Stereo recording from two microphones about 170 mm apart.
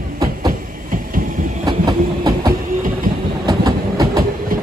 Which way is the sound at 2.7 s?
55° right (ahead or behind).